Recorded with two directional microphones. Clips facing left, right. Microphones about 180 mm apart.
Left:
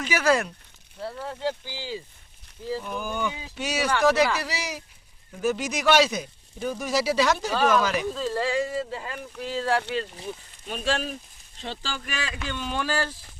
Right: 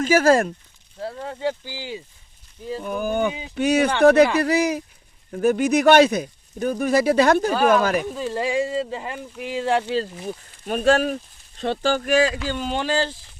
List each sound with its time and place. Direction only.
0.0 s speech: 45° right (ahead or behind)
1.0 s speech: 15° right (ahead or behind)
2.8 s speech: 55° right (ahead or behind)
8.1 s speech: 15° right (ahead or behind)
9.9 s speech: 35° right (ahead or behind)
10.7 s speech: 50° right (ahead or behind); by 13.1 s 25° right (ahead or behind)